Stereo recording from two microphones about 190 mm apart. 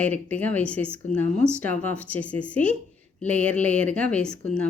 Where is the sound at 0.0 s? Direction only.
5° left (ahead or behind).